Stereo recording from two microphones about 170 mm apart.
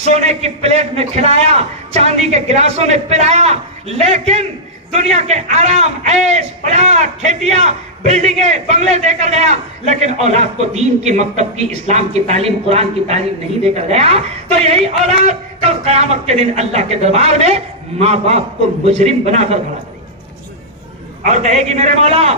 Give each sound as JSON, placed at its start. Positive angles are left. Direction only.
{"t": 0.0, "sound": "a man's voice", "side_deg": -40}
{"t": 21.2, "sound": "a man's voice", "side_deg": -45}